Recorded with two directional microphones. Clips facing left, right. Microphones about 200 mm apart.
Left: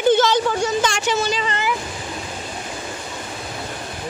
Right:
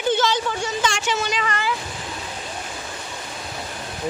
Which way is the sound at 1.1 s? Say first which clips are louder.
Left 3 dB; 30° left (ahead or behind).